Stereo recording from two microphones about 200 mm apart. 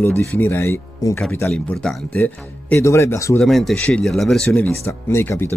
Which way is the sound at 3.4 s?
Centre (ahead or behind).